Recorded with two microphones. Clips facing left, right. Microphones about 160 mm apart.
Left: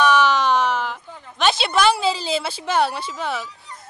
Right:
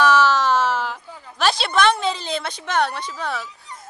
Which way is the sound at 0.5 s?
5° right (ahead or behind).